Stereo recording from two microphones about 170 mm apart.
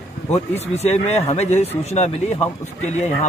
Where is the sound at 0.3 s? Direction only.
40° left (ahead or behind).